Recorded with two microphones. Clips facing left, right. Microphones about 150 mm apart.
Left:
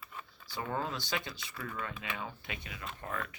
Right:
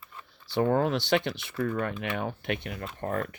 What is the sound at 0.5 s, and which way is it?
Speech, 65° right (ahead or behind).